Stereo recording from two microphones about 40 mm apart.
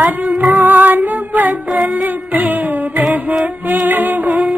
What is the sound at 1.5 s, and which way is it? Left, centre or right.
Child singing, centre.